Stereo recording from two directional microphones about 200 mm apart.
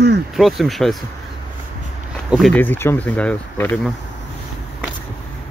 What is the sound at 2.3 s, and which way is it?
Speech, 5° left (ahead or behind).